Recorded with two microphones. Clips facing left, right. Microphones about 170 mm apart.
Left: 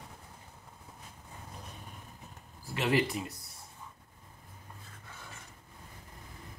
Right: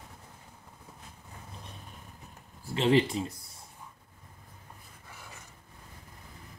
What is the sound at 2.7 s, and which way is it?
Speech, 30° right (ahead or behind).